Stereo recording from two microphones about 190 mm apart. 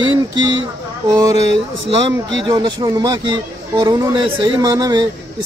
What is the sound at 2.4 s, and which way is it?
A man's voice, 20° right (ahead or behind).